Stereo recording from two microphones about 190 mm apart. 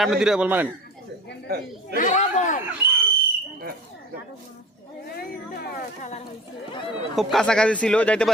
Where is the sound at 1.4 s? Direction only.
55° right (ahead or behind).